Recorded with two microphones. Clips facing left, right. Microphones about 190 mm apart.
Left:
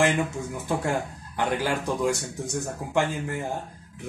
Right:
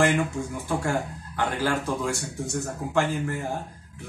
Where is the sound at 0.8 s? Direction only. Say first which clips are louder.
Even; 15° left (ahead or behind).